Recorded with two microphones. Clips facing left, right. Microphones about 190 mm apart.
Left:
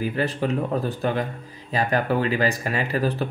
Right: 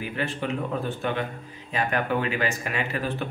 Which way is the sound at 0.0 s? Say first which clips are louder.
Left 5 dB; 40° left (ahead or behind).